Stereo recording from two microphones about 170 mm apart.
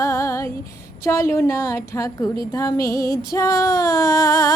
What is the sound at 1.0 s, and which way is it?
A woman's voice, 15° left (ahead or behind).